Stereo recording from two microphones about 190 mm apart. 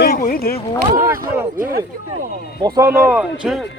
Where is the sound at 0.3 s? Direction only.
55° left (ahead or behind).